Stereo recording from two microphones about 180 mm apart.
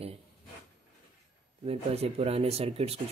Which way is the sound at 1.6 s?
35° right (ahead or behind).